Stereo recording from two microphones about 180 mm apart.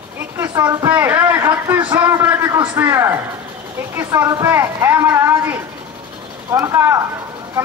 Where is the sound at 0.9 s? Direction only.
10° right (ahead or behind).